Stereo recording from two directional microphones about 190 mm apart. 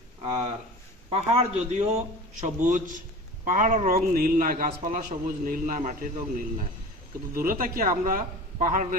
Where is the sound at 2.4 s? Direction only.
40° right (ahead or behind).